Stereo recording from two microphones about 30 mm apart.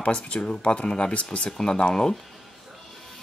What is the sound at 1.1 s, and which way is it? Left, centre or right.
Speech, left.